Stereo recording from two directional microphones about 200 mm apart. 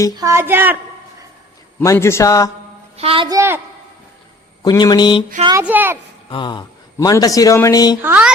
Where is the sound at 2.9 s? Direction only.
30° right (ahead or behind).